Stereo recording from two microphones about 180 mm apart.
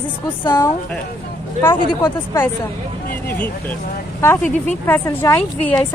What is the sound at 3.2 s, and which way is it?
Speech, 10° left (ahead or behind).